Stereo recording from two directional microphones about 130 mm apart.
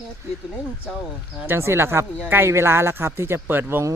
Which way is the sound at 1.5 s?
20° right (ahead or behind).